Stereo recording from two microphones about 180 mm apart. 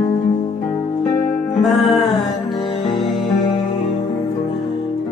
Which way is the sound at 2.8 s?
25° left (ahead or behind).